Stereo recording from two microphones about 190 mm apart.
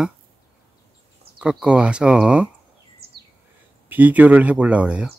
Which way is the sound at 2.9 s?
55° right (ahead or behind).